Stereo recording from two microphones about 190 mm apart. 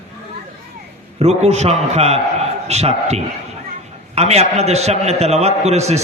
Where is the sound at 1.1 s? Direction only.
35° right (ahead or behind).